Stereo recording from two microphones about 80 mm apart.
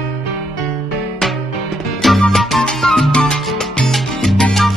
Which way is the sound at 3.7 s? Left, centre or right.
Centre.